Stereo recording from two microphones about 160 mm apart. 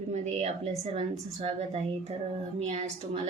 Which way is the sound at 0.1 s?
45° right (ahead or behind).